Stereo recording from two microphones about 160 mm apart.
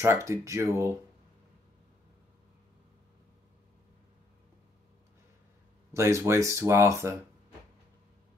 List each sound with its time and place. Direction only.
0.0 s speech: 15° right (ahead or behind)
5.9 s speech: 15° right (ahead or behind)